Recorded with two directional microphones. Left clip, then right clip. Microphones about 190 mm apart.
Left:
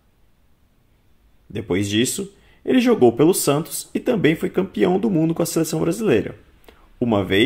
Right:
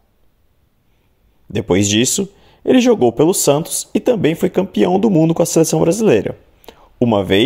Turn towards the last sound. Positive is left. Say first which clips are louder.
# right 5 dB
turn(degrees=-40)  # may be behind; listen again after turning